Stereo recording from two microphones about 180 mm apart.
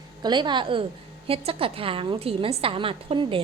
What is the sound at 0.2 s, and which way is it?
A woman's voice, 25° right (ahead or behind).